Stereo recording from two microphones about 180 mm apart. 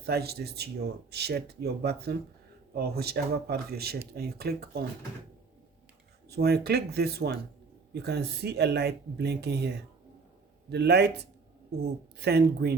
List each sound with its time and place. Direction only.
0.0 s speech: 60° right (ahead or behind)
6.2 s a man's voice: 60° right (ahead or behind)